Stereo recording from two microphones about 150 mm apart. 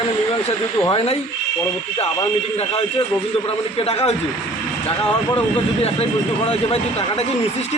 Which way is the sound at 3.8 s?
40° left (ahead or behind).